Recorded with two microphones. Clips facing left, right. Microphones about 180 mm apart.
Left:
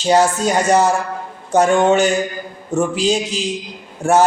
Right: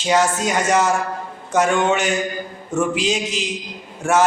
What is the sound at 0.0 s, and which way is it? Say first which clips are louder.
Speech: left 4 dB; 35° left (ahead or behind).